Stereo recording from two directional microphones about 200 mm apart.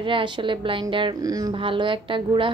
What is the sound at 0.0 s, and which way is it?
A woman's voice, 25° right (ahead or behind).